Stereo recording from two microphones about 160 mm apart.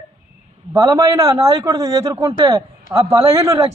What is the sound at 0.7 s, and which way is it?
A man's voice, 20° right (ahead or behind).